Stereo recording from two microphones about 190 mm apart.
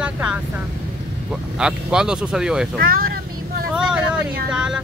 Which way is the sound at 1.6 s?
5° right (ahead or behind).